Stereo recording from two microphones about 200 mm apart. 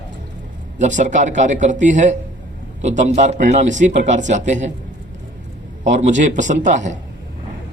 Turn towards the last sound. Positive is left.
turn(degrees=-35)  # may be behind; listen again after turning